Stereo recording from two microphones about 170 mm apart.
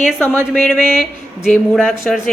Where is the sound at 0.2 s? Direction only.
10° left (ahead or behind).